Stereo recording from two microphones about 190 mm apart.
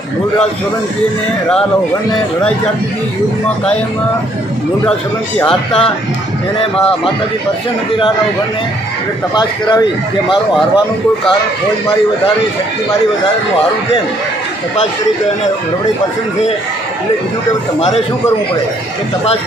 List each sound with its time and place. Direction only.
5.4 s speech: 5° left (ahead or behind)
9.3 s speech: 20° left (ahead or behind)